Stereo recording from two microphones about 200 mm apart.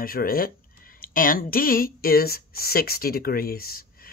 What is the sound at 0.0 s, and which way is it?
Speech, 45° left (ahead or behind).